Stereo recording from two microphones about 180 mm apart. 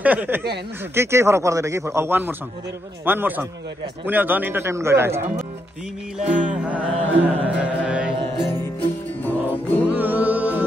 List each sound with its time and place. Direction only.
0.0 s music: 10° right (ahead or behind)
6.2 s music: 40° right (ahead or behind)
6.6 s music: 10° right (ahead or behind)
9.2 s music: 10° left (ahead or behind)
9.8 s music: 10° right (ahead or behind)